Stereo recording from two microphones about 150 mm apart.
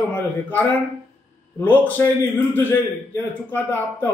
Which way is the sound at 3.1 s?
10° left (ahead or behind).